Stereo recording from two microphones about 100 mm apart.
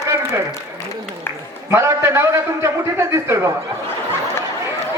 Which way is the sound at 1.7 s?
25° right (ahead or behind).